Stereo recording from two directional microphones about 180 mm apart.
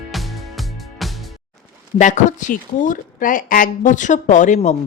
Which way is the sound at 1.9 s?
40° left (ahead or behind).